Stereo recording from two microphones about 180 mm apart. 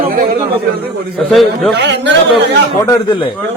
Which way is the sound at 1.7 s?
75° right (ahead or behind).